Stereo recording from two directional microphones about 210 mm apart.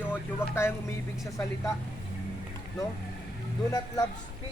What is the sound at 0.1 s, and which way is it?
Speech, 10° left (ahead or behind).